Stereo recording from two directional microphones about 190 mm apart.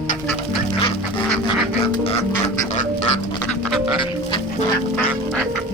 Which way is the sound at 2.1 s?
35° left (ahead or behind).